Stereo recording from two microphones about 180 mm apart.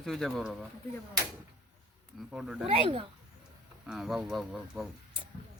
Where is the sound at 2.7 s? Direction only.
30° right (ahead or behind).